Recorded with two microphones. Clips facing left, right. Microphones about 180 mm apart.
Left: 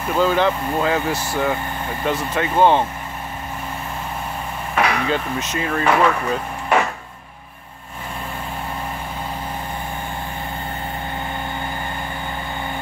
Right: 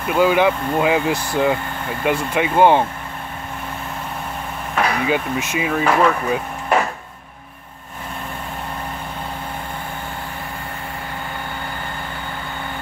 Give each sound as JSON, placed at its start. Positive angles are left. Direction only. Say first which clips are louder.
{"t": 0.1, "sound": "wood", "louder": "right 2 dB", "side_deg": -10}
{"t": 5.0, "sound": "wood", "louder": "right 2 dB", "side_deg": -10}